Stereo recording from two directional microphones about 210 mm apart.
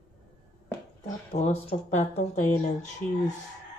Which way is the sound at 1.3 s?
30° left (ahead or behind).